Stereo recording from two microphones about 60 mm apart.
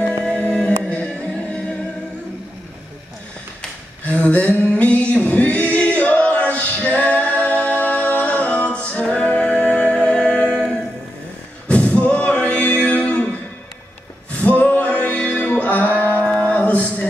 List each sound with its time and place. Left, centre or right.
0.4 s music: left
4.0 s a sound: left
4.6 s singing: left
7.0 s music: left
11.6 s singing: centre
14.6 s music: left